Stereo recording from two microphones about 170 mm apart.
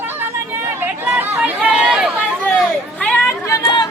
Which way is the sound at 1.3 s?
5° right (ahead or behind).